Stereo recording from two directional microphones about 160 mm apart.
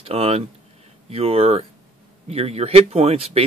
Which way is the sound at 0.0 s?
40° right (ahead or behind).